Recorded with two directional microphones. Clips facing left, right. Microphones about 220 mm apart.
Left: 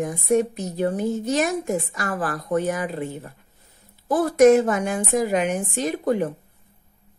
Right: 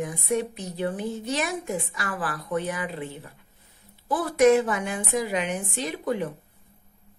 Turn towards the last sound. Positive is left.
turn(degrees=45)  # may be behind; listen again after turning